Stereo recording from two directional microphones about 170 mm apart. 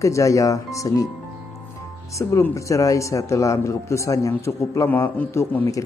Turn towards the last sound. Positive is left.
turn(degrees=20)  # may be behind; listen again after turning